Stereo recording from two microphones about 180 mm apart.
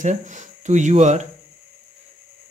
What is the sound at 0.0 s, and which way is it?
Speech, 45° right (ahead or behind).